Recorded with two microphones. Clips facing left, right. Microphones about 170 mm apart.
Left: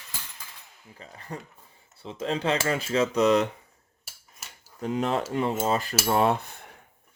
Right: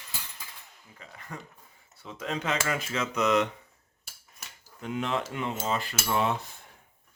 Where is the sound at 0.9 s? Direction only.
35° left (ahead or behind).